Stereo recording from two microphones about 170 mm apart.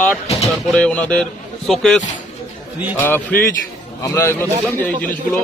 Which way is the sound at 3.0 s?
10° left (ahead or behind).